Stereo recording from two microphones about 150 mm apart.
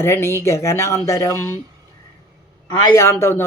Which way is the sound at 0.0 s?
15° left (ahead or behind).